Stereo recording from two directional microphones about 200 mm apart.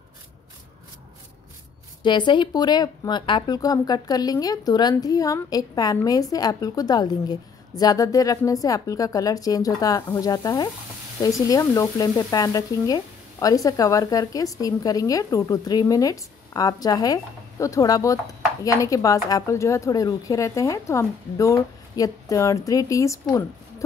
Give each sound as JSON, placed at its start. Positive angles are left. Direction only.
{"t": 2.0, "sound": "a woman's voice", "side_deg": 25}